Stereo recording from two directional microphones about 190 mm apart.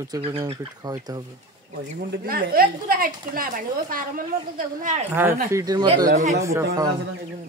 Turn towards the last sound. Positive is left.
turn(degrees=-15)  # may be behind; listen again after turning